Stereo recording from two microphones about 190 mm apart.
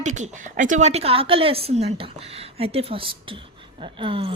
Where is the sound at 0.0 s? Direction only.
40° right (ahead or behind).